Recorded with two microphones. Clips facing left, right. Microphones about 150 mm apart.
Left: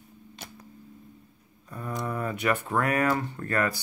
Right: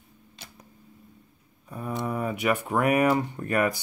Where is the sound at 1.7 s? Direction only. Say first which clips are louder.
Right 2 dB; 10° right (ahead or behind).